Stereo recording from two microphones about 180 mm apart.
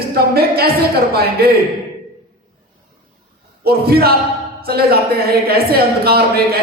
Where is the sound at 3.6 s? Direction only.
60° right (ahead or behind).